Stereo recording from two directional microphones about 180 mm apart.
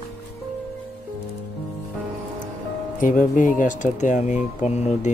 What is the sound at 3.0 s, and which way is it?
Speech, 45° left (ahead or behind).